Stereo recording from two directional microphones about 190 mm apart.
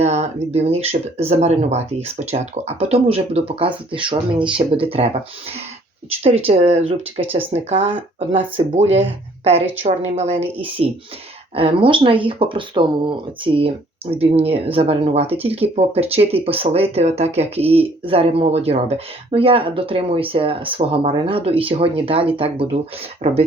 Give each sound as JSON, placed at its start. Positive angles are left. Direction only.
{"t": 0.0, "sound": "speech", "side_deg": -35}
{"t": 6.2, "sound": "speech", "side_deg": -30}